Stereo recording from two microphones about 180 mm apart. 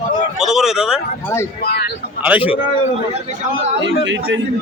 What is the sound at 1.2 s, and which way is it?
Speech, 15° left (ahead or behind).